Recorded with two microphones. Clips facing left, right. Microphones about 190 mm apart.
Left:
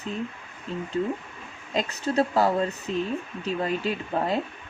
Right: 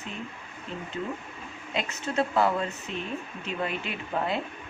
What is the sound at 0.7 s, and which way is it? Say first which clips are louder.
Speech: left 6 dB; 35° left (ahead or behind).